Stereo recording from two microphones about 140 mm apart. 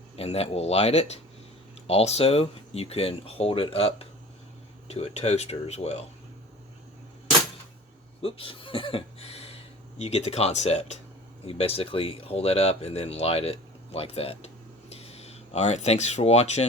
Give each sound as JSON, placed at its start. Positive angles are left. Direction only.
{"t": 0.2, "sound": "speech", "side_deg": 45}
{"t": 8.2, "sound": "speech", "side_deg": 40}